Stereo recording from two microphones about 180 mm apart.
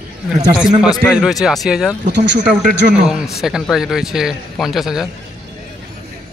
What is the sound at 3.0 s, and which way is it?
A man's voice, 5° right (ahead or behind).